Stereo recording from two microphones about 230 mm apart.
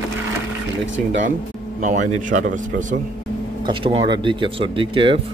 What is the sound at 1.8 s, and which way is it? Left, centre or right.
Speech, right.